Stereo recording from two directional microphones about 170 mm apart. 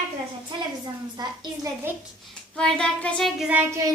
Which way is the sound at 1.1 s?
25° right (ahead or behind).